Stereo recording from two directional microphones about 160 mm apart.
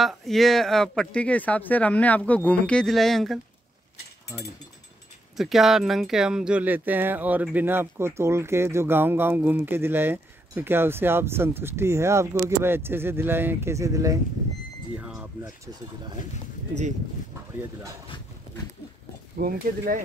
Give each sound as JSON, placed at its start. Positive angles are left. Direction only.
{"t": 0.0, "sound": "speech", "side_deg": 0}
{"t": 5.4, "sound": "speech", "side_deg": 0}
{"t": 15.0, "sound": "a sound", "side_deg": -5}
{"t": 15.4, "sound": "speech", "side_deg": -20}
{"t": 19.3, "sound": "speech", "side_deg": -65}